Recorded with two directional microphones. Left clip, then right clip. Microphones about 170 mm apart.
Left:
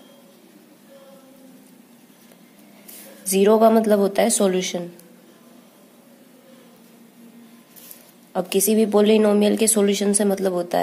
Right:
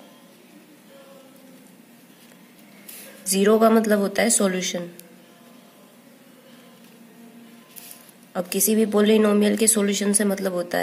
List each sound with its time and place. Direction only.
3.3 s a woman's voice: 10° left (ahead or behind)
8.3 s a woman's voice: 15° left (ahead or behind)